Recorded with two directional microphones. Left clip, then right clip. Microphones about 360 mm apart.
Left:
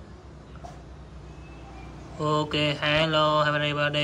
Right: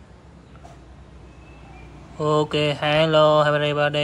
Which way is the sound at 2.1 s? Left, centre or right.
Centre.